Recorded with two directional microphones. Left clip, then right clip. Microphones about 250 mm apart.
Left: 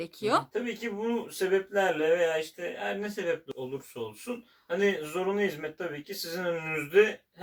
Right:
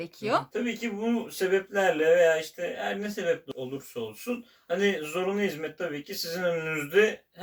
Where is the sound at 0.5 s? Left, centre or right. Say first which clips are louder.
Right 1 dB; centre.